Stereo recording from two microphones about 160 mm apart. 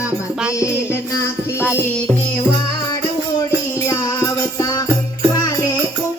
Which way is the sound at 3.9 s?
20° left (ahead or behind).